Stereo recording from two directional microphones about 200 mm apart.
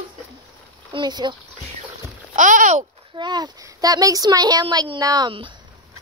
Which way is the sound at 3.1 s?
20° right (ahead or behind).